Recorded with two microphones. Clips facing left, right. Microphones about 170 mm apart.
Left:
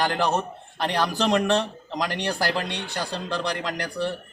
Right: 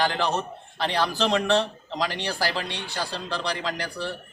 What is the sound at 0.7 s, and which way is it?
Speech, 10° left (ahead or behind).